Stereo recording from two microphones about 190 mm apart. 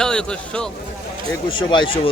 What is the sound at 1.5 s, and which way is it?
Speech, 25° left (ahead or behind).